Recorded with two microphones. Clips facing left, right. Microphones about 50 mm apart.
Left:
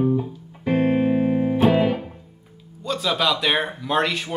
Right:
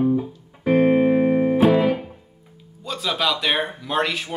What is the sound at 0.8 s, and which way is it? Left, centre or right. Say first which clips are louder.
Music: right 2 dB; centre.